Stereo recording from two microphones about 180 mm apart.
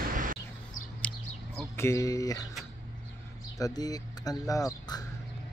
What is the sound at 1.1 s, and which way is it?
Bird, 5° left (ahead or behind).